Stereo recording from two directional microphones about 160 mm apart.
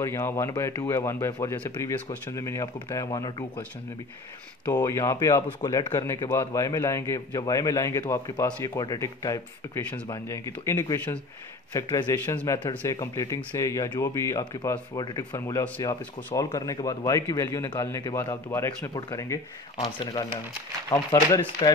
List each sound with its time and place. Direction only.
0.0 s speech: 15° left (ahead or behind)
4.7 s speech: 20° left (ahead or behind)
19.8 s speech: 30° left (ahead or behind)